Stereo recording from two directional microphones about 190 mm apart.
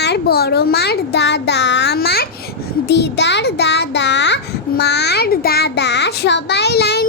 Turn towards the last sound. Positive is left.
turn(degrees=60)  # may be behind; listen again after turning